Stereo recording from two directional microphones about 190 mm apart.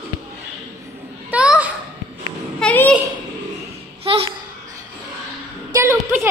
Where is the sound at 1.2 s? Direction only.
5° right (ahead or behind).